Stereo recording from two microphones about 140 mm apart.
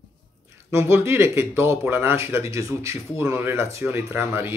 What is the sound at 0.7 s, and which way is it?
A man's voice, 20° right (ahead or behind).